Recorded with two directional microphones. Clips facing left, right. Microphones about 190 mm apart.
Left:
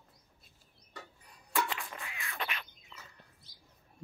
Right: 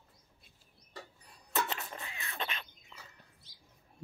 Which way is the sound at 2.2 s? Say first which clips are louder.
Left 1 dB; 25° right (ahead or behind).